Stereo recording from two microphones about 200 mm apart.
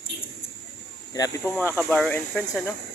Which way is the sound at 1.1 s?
20° left (ahead or behind).